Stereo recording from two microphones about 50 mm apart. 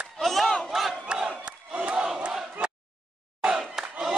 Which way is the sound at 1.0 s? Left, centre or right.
Right.